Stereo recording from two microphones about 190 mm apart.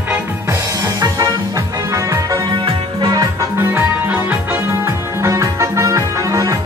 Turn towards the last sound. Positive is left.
turn(degrees=-15)  # may be behind; listen again after turning